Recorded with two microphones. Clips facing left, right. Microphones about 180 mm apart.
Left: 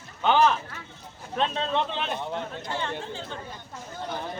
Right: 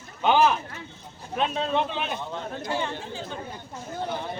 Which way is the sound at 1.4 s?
5° right (ahead or behind).